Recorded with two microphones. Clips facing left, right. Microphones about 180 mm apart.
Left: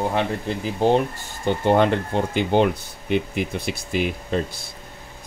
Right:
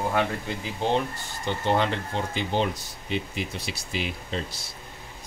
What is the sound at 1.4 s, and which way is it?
Speech, 50° left (ahead or behind).